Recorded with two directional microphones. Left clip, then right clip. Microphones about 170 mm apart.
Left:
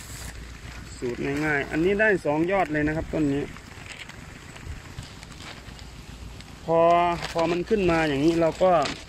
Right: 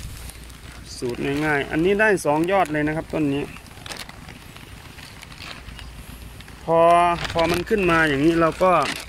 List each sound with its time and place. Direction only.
1.2 s speech: 30° right (ahead or behind)
6.6 s speech: 15° right (ahead or behind)
8.4 s speech: 25° right (ahead or behind)